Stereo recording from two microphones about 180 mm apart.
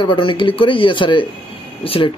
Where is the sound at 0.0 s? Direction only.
25° left (ahead or behind).